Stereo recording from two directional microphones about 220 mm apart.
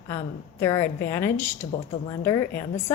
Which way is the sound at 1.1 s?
10° left (ahead or behind).